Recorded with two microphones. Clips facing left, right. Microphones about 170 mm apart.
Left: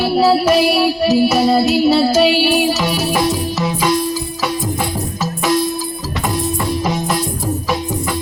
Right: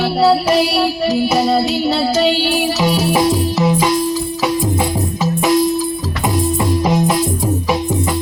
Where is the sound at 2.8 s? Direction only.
20° right (ahead or behind).